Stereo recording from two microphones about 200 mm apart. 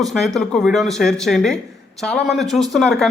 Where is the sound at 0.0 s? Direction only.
Centre (ahead or behind).